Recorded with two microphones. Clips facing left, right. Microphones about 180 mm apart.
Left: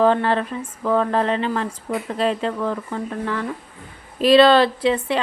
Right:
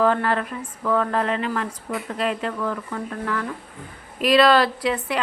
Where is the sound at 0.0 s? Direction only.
25° left (ahead or behind).